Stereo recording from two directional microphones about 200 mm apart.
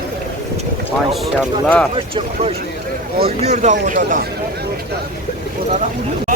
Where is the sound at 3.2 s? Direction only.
30° right (ahead or behind).